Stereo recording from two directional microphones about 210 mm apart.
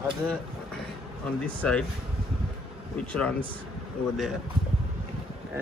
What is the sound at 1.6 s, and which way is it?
Speech, 5° left (ahead or behind).